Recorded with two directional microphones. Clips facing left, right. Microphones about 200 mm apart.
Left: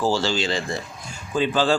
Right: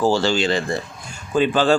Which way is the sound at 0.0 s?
60° right (ahead or behind).